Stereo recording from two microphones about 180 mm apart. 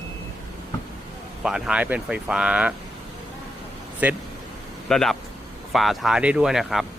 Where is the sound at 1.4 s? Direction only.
Centre (ahead or behind).